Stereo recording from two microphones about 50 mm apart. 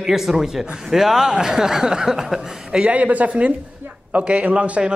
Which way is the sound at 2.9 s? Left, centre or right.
Right.